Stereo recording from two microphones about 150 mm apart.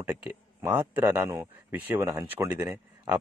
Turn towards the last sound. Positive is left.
turn(degrees=-20)  # may be behind; listen again after turning